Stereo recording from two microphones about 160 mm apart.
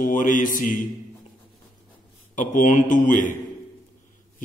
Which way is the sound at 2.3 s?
55° left (ahead or behind).